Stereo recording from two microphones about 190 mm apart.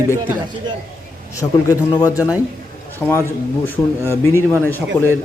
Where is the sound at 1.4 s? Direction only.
20° left (ahead or behind).